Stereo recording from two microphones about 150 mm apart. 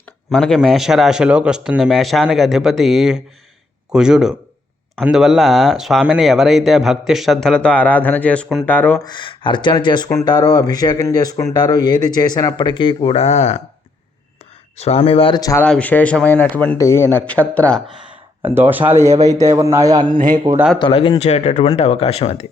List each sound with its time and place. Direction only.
0.3 s a man's voice: 5° left (ahead or behind)
9.0 s speech: 30° left (ahead or behind); by 13.6 s 50° left (ahead or behind)
14.8 s speech: 45° left (ahead or behind)
15.4 s speech: 25° left (ahead or behind)
15.6 s a man's voice: 10° left (ahead or behind)
18.1 s a man's voice: 15° right (ahead or behind); by 20.1 s 30° right (ahead or behind)
20.1 s speech: 65° right (ahead or behind)
20.7 s speech: 35° left (ahead or behind)